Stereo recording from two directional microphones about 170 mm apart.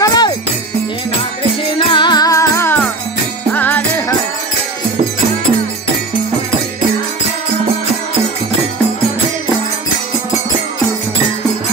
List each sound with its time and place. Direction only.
0.0 s music: 25° left (ahead or behind)
1.6 s music: 30° left (ahead or behind); by 3.8 s 10° left (ahead or behind)